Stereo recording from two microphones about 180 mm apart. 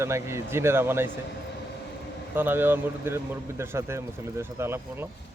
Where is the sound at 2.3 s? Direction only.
10° right (ahead or behind).